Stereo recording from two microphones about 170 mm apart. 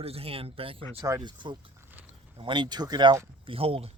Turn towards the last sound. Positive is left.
turn(degrees=-35)  # may be behind; listen again after turning